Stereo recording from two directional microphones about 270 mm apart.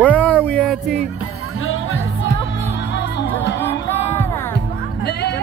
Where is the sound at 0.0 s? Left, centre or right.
Centre.